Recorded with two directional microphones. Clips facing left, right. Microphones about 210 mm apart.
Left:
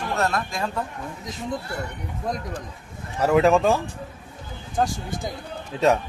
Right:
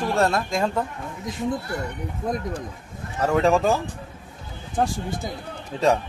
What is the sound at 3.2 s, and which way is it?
Speech, 5° left (ahead or behind).